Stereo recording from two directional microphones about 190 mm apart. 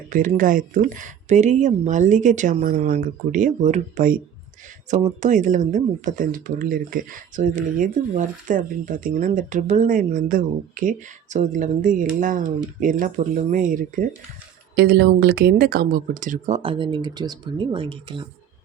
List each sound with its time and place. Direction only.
0.1 s speech: 45° right (ahead or behind)
14.8 s speech: 60° right (ahead or behind); by 16.6 s 45° right (ahead or behind)
16.6 s speech: 30° right (ahead or behind)